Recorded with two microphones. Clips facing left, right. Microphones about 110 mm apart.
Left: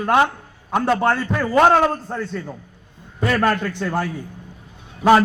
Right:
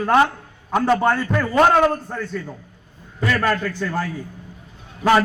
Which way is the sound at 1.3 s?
10° left (ahead or behind).